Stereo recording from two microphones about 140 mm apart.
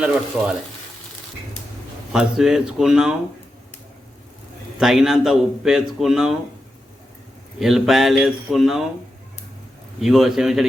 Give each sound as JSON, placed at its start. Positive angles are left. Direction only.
{"t": 0.0, "sound": "speech", "side_deg": -5}
{"t": 2.1, "sound": "a man's voice", "side_deg": -5}
{"t": 4.8, "sound": "a man's voice", "side_deg": 0}
{"t": 7.6, "sound": "a man's voice", "side_deg": 0}
{"t": 10.0, "sound": "a man's voice", "side_deg": 0}